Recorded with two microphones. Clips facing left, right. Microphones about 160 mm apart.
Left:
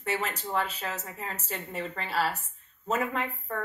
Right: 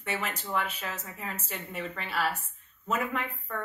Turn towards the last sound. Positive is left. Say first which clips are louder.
# left 2 dB
turn(degrees=35)  # may be behind; listen again after turning